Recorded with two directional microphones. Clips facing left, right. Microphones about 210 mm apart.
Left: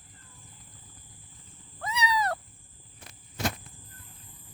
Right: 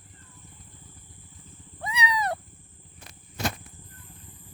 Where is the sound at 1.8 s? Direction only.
15° right (ahead or behind).